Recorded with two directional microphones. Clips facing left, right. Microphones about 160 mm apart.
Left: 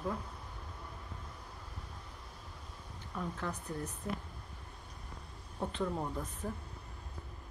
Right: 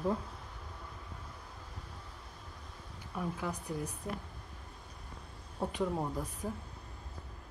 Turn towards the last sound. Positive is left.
turn(degrees=-10)  # may be behind; listen again after turning